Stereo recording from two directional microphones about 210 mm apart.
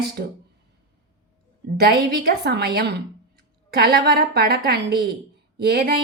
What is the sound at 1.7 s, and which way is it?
A woman's voice, 50° right (ahead or behind).